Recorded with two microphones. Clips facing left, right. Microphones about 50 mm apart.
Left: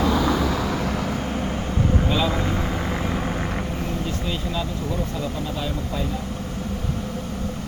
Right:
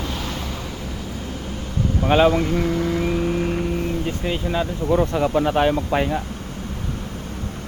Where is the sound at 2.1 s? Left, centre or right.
Right.